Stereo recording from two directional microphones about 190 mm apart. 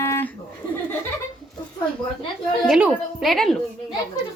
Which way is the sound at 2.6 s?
Centre (ahead or behind).